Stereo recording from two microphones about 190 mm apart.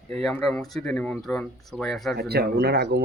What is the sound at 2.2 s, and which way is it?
Speech, 55° right (ahead or behind).